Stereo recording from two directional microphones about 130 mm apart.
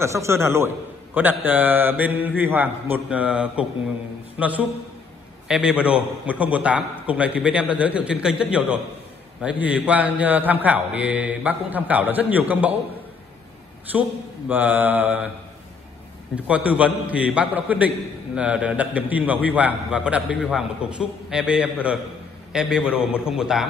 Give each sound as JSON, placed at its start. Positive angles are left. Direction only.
{"t": 0.0, "sound": "a man's voice", "side_deg": -20}
{"t": 14.5, "sound": "a man's voice", "side_deg": -15}
{"t": 16.4, "sound": "a man's voice", "side_deg": -10}